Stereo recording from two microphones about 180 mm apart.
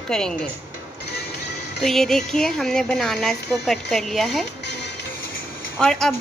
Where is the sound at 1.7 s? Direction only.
Centre (ahead or behind).